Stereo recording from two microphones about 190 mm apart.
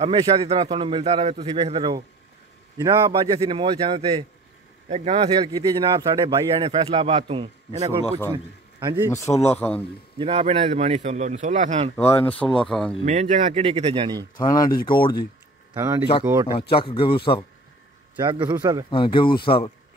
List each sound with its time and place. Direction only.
0.0 s a man's voice: 25° right (ahead or behind)
5.1 s a man's voice: 20° right (ahead or behind)
6.2 s a man's voice: 30° right (ahead or behind)
9.1 s a man's voice: 15° left (ahead or behind)
10.1 s speech: 30° right (ahead or behind)
12.0 s speech: 10° left (ahead or behind)
13.0 s speech: 35° right (ahead or behind)
14.3 s speech: 20° left (ahead or behind)
15.7 s speech: 15° right (ahead or behind)
16.7 s speech: 30° left (ahead or behind)
18.2 s a man's voice: 25° right (ahead or behind)
18.9 s speech: 25° left (ahead or behind)